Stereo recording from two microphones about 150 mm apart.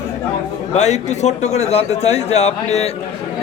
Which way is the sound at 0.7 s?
50° left (ahead or behind).